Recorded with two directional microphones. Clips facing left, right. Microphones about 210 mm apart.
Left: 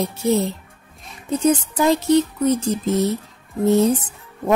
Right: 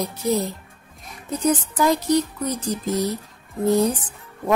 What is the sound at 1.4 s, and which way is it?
Speech, 25° left (ahead or behind).